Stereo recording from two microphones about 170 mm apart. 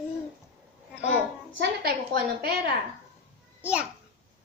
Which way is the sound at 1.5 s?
65° right (ahead or behind).